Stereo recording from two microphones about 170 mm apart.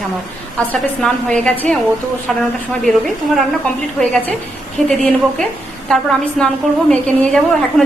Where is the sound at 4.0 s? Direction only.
5° left (ahead or behind).